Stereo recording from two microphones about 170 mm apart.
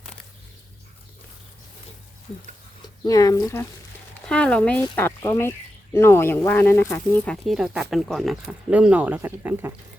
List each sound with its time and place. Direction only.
3.0 s speech: 20° left (ahead or behind)
4.3 s speech: 5° left (ahead or behind)
7.4 s speech: 5° right (ahead or behind)